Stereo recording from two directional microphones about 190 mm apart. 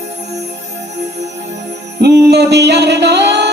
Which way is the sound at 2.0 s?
60° right (ahead or behind).